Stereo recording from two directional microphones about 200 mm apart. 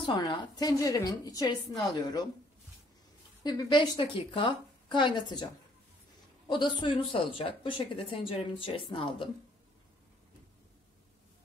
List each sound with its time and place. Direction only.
0.0 s speech: 25° left (ahead or behind)
3.4 s speech: 20° left (ahead or behind)
6.5 s speech: 25° left (ahead or behind)